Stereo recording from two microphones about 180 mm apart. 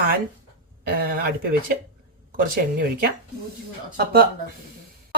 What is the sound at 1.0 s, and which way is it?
Speech, 55° right (ahead or behind).